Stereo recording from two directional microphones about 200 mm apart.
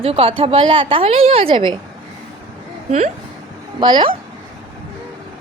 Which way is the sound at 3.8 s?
25° right (ahead or behind).